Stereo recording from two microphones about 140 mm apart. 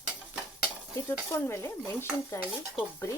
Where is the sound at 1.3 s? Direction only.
20° left (ahead or behind).